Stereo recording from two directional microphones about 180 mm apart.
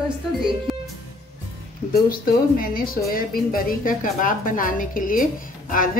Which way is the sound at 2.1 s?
55° left (ahead or behind).